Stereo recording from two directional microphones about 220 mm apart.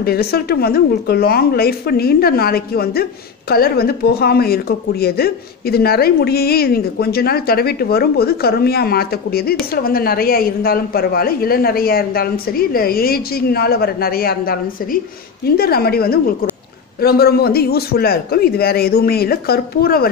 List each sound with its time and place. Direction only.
0.0 s speech: 45° left (ahead or behind)